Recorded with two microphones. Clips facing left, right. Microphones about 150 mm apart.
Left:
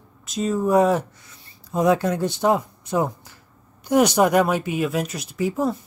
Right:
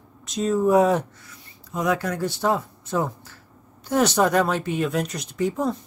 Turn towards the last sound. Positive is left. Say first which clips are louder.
# left 1 dB
turn(degrees=5)  # may be behind; listen again after turning